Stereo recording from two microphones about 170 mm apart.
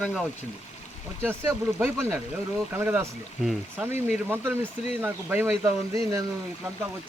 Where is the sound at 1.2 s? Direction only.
15° right (ahead or behind).